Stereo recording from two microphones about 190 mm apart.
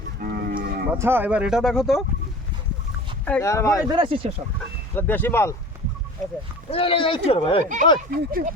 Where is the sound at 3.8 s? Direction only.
25° right (ahead or behind).